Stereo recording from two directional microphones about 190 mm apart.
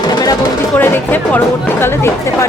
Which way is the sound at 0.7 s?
10° left (ahead or behind).